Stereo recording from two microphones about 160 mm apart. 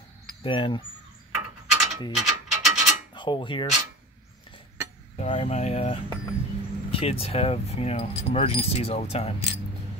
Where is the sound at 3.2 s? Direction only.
30° left (ahead or behind).